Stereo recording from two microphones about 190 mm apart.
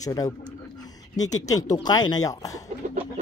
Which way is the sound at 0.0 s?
20° left (ahead or behind).